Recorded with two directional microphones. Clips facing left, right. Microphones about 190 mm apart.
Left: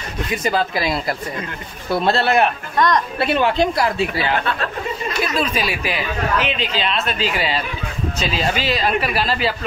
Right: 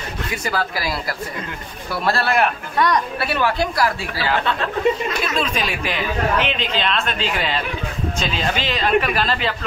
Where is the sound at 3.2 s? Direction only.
20° left (ahead or behind).